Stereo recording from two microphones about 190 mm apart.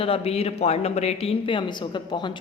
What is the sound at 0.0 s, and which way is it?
A woman's voice, 30° left (ahead or behind).